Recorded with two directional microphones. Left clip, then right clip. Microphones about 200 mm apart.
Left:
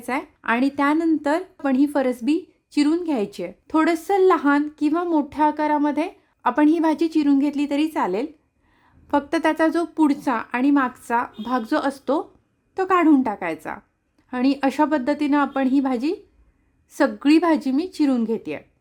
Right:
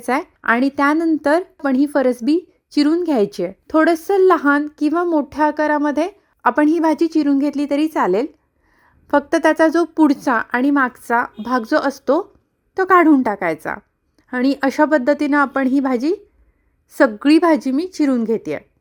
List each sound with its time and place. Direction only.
0.0 s speech: 30° right (ahead or behind)